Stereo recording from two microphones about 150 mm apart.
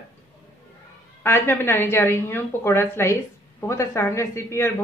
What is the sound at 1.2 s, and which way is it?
A man's voice, 15° left (ahead or behind).